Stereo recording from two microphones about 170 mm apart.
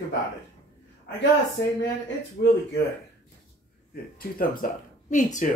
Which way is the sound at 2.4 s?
60° left (ahead or behind).